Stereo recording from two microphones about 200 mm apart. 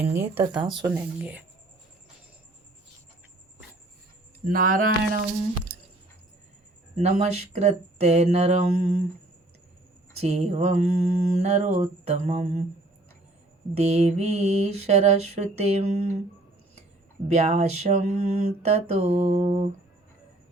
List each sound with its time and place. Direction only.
0.0 s speech: 10° right (ahead or behind)
4.4 s speech: 45° right (ahead or behind)
6.9 s mantra: 35° right (ahead or behind)
10.2 s mantra: 35° right (ahead or behind)
13.7 s mantra: 35° right (ahead or behind)
17.2 s mantra: 35° right (ahead or behind)